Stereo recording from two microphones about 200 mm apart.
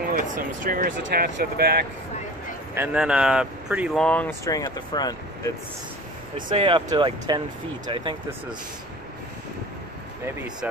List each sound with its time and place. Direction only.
0.7 s speech: 50° right (ahead or behind)
2.7 s speech: 10° right (ahead or behind); by 5.5 s 20° left (ahead or behind)
6.3 s speech: 25° right (ahead or behind)
10.2 s speech: 5° right (ahead or behind)